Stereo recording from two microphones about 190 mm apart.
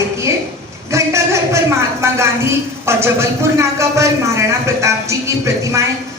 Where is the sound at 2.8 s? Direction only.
15° right (ahead or behind).